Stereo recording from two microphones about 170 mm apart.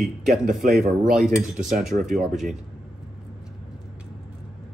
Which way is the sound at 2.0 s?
50° right (ahead or behind).